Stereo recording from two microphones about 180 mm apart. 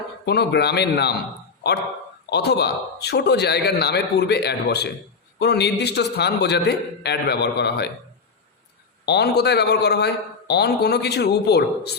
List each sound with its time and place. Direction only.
0.3 s a man's voice: 65° left (ahead or behind)
2.3 s a man's voice: 65° left (ahead or behind)
9.0 s a man's voice: 65° left (ahead or behind)